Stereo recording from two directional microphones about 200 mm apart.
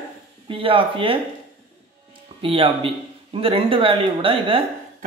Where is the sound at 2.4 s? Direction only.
25° right (ahead or behind).